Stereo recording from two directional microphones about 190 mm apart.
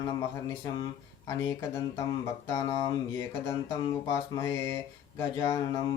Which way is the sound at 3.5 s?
20° left (ahead or behind).